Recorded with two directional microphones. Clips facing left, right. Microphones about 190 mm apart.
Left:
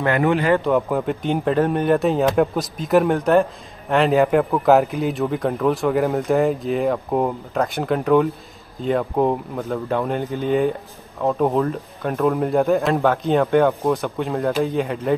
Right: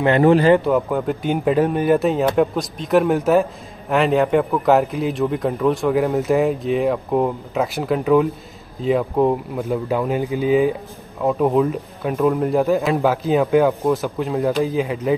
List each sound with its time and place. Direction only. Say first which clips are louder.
0.2 s speech: right 5 dB; 35° right (ahead or behind)
0.7 s speech: right 1 dB; centre (ahead or behind)